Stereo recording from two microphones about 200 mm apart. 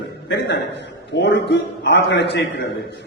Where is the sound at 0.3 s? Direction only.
55° left (ahead or behind).